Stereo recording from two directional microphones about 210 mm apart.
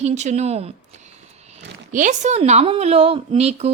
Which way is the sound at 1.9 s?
35° right (ahead or behind).